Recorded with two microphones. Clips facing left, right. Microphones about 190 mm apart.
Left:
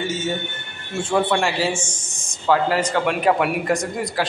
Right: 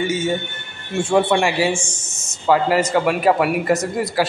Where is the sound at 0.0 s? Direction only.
15° right (ahead or behind).